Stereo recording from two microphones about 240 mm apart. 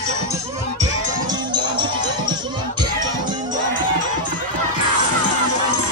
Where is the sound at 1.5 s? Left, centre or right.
Centre.